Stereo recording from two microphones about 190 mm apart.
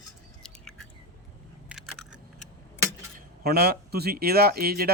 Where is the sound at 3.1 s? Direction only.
55° right (ahead or behind).